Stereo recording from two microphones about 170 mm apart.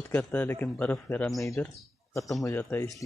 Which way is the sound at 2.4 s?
10° left (ahead or behind).